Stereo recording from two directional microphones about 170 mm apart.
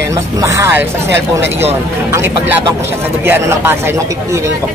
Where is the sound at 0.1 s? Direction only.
20° right (ahead or behind).